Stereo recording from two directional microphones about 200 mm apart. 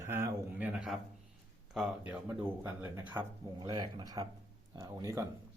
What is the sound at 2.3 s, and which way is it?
Speech, 10° right (ahead or behind).